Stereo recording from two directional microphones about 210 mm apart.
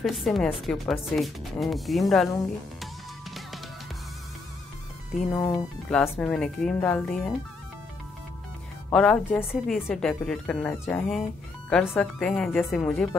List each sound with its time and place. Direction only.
0.0 s speech: centre (ahead or behind)
2.8 s music: centre (ahead or behind)
5.3 s speech: 20° left (ahead or behind)
5.9 s speech: 5° left (ahead or behind)
8.9 s speech: 5° left (ahead or behind)